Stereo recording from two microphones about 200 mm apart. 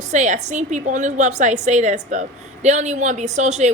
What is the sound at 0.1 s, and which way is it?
A woman's voice, 35° right (ahead or behind).